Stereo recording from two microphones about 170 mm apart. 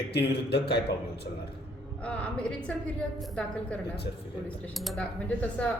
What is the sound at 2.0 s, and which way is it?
Speech, 5° left (ahead or behind).